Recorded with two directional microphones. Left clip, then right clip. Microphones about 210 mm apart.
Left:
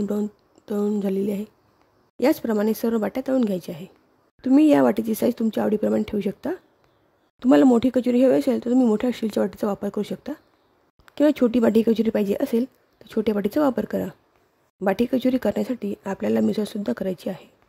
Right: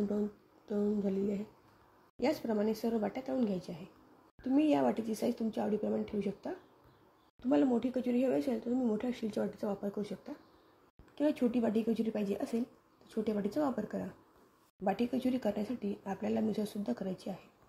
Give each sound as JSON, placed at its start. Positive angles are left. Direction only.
{"t": 0.7, "sound": "speech", "side_deg": 55}